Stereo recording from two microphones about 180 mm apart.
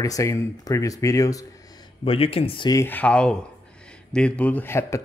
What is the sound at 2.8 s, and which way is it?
Speech, 10° left (ahead or behind).